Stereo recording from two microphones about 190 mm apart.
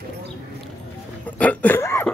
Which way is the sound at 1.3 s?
10° left (ahead or behind).